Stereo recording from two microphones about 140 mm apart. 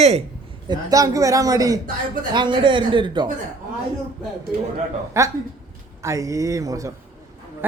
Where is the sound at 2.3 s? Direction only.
35° right (ahead or behind).